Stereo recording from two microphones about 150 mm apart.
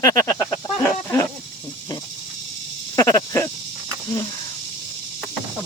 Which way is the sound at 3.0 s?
20° left (ahead or behind).